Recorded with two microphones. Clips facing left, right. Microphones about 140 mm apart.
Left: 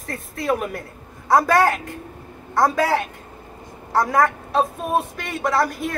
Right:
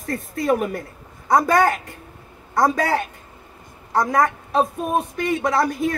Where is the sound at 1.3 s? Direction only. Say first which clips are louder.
Even; 5° left (ahead or behind).